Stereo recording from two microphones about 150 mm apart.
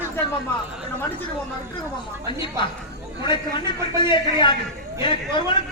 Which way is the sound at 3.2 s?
30° left (ahead or behind).